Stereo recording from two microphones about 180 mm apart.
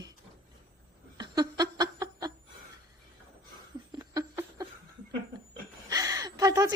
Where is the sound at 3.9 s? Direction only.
20° right (ahead or behind).